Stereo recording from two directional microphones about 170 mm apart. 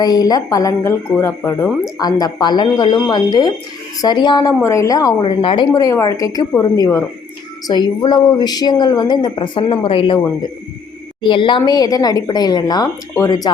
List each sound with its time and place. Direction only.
0.0 s speech: 25° left (ahead or behind)
11.2 s speech: 30° left (ahead or behind)